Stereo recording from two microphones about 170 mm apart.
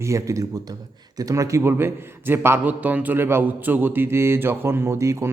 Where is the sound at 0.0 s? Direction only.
20° right (ahead or behind).